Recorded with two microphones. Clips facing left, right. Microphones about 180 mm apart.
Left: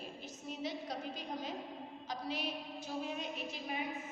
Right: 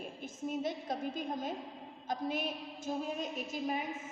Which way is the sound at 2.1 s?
50° right (ahead or behind).